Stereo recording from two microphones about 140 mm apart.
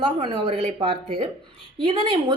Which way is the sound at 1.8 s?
35° right (ahead or behind).